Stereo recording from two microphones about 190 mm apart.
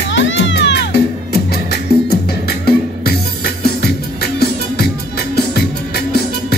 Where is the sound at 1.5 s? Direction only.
55° left (ahead or behind).